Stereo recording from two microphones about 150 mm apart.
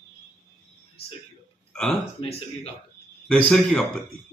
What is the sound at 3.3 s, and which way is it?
Speech, 5° left (ahead or behind).